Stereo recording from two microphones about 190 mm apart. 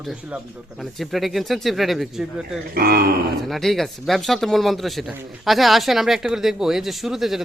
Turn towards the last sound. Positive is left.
turn(degrees=0)  # may be behind; listen again after turning